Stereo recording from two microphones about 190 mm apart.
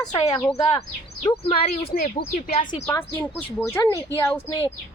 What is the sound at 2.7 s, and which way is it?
Speech, 15° left (ahead or behind).